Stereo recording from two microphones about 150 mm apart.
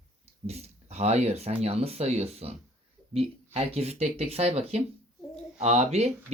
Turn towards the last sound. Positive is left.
turn(degrees=-45)  # may be behind; listen again after turning